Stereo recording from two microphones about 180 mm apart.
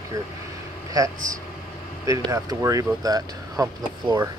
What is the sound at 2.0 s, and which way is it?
Speech, 15° right (ahead or behind).